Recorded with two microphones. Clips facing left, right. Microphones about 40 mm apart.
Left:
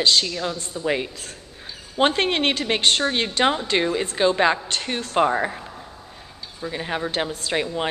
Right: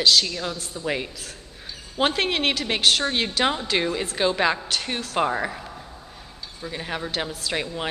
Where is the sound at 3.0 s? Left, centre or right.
Centre.